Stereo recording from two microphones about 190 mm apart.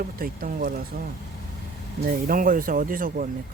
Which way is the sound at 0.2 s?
45° right (ahead or behind).